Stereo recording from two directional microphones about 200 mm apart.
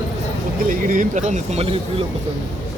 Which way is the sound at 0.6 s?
40° right (ahead or behind).